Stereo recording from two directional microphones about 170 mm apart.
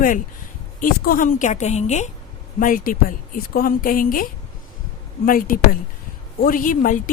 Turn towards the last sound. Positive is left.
turn(degrees=50)  # may be behind; listen again after turning